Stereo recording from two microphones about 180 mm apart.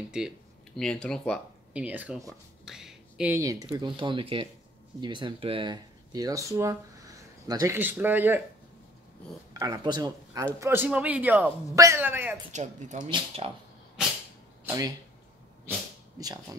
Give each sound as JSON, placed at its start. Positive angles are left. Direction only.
{"t": 0.7, "sound": "speech", "side_deg": 5}
{"t": 1.7, "sound": "speech", "side_deg": -5}
{"t": 2.1, "sound": "a sound", "side_deg": 0}
{"t": 3.3, "sound": "a man's voice", "side_deg": -20}
{"t": 9.5, "sound": "speech", "side_deg": -25}
{"t": 10.4, "sound": "a man's voice", "side_deg": -10}
{"t": 12.5, "sound": "a woman's voice", "side_deg": -40}
{"t": 13.4, "sound": "speech", "side_deg": -30}
{"t": 14.6, "sound": "speech", "side_deg": -15}
{"t": 16.2, "sound": "speech", "side_deg": -20}